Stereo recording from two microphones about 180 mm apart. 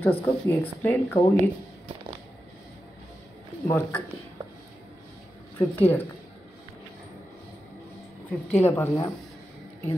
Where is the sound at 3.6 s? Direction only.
10° left (ahead or behind).